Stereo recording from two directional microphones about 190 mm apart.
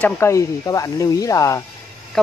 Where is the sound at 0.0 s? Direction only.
15° left (ahead or behind).